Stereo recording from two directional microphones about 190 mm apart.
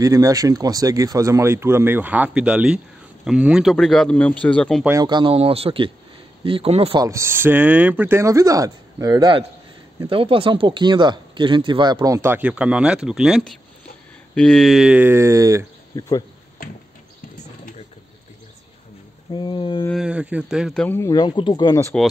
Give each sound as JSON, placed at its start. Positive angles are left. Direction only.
{"t": 0.0, "sound": "speech", "side_deg": -15}
{"t": 4.8, "sound": "speech", "side_deg": -20}
{"t": 7.1, "sound": "speech", "side_deg": -15}
{"t": 16.0, "sound": "a sound", "side_deg": 20}
{"t": 19.3, "sound": "a sound", "side_deg": 25}
{"t": 19.9, "sound": "a man's voice", "side_deg": -5}